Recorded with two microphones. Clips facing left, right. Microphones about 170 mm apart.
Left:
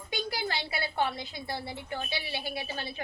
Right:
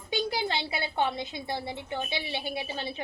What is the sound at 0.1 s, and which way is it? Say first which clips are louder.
A woman's voice: right 4 dB; 20° right (ahead or behind).